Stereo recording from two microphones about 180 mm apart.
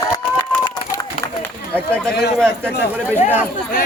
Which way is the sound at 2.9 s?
10° right (ahead or behind).